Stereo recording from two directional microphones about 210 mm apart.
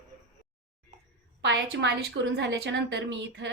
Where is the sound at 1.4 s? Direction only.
55° right (ahead or behind).